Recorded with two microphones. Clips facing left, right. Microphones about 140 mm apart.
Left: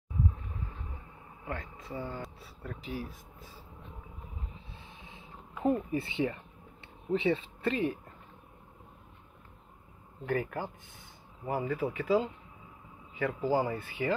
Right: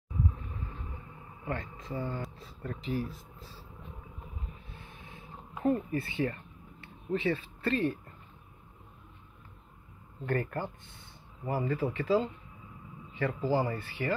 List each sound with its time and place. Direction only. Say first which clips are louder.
1.4 s speech: right 3 dB; centre (ahead or behind)
4.7 s a sound: right 1 dB; 20° left (ahead or behind)
5.9 s speech: left 1 dB; 20° left (ahead or behind)
10.2 s speech: even; 5° left (ahead or behind)